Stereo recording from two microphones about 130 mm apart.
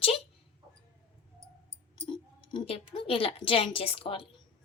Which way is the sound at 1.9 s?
40° left (ahead or behind).